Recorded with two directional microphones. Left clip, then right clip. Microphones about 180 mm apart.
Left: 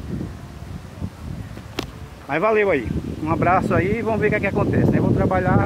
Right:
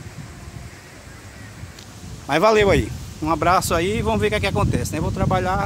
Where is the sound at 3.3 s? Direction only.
35° right (ahead or behind).